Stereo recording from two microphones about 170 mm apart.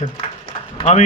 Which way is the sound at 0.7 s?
40° left (ahead or behind).